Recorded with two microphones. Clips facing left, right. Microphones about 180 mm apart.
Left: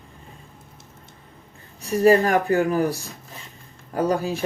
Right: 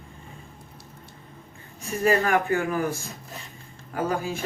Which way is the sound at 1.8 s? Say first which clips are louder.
Left 6 dB; 40° left (ahead or behind).